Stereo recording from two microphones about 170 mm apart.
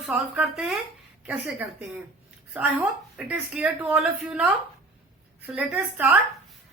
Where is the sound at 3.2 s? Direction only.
5° right (ahead or behind).